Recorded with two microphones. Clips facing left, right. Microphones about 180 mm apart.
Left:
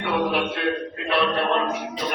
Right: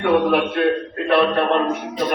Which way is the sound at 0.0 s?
50° right (ahead or behind).